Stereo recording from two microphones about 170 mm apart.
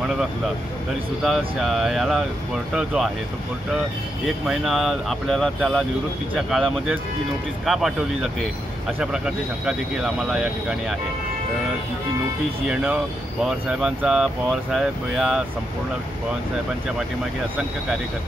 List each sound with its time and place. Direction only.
1.2 s speech: centre (ahead or behind)
4.5 s speech: centre (ahead or behind)
12.6 s speech: 5° right (ahead or behind)